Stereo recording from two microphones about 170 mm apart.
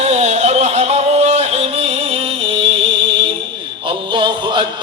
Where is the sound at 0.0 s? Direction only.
40° right (ahead or behind).